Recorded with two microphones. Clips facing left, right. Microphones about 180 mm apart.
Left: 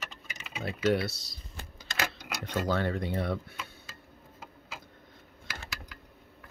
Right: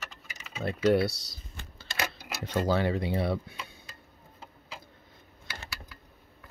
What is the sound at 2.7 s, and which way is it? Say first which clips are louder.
Speech: right 3 dB; 10° right (ahead or behind).